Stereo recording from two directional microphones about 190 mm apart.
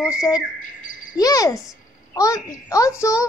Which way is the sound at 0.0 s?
15° left (ahead or behind).